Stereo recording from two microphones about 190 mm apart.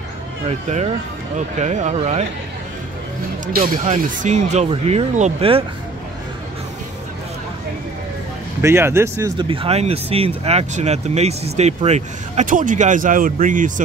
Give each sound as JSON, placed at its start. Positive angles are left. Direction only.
{"t": 0.5, "sound": "speech", "side_deg": -35}
{"t": 3.5, "sound": "speech", "side_deg": -45}
{"t": 8.5, "sound": "speech", "side_deg": -15}
{"t": 9.4, "sound": "speech", "side_deg": -30}